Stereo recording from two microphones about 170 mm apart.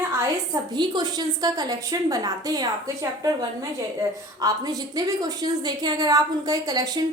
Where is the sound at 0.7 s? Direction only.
25° right (ahead or behind).